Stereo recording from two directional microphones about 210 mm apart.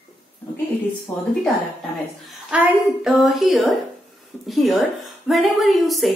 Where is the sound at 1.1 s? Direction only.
10° left (ahead or behind).